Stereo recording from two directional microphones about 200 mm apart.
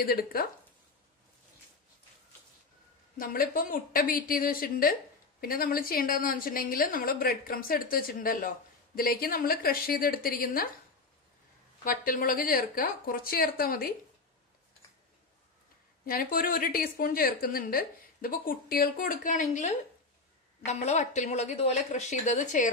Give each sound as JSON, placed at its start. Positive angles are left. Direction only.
{"t": 0.0, "sound": "a woman's voice", "side_deg": 50}
{"t": 3.2, "sound": "a woman's voice", "side_deg": 45}
{"t": 11.8, "sound": "a woman's voice", "side_deg": 45}
{"t": 16.1, "sound": "a woman's voice", "side_deg": 45}